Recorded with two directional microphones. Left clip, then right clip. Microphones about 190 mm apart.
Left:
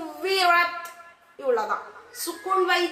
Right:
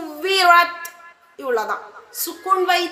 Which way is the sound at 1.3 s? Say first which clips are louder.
Right 2 dB; 50° right (ahead or behind).